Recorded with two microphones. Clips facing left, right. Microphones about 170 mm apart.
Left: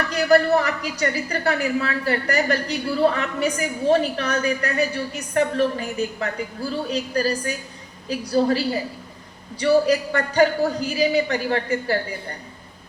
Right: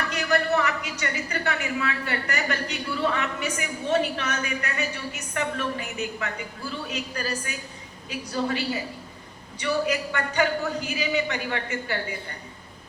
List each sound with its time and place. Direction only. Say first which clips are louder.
0.1 s a woman's voice: left 8 dB; 35° left (ahead or behind)